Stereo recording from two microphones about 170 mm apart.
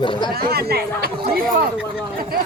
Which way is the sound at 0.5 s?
65° right (ahead or behind).